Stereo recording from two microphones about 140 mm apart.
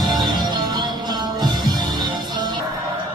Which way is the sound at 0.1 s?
30° right (ahead or behind).